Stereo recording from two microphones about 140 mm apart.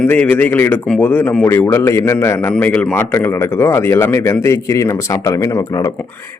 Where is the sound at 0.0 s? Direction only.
10° left (ahead or behind).